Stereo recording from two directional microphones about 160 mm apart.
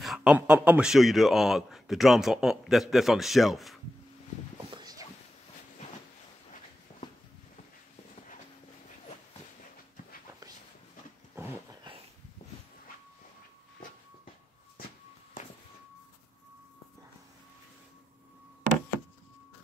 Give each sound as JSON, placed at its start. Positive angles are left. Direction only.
{"t": 0.0, "sound": "a man's voice", "side_deg": 0}
{"t": 4.7, "sound": "walk", "side_deg": -25}
{"t": 6.9, "sound": "walk", "side_deg": 45}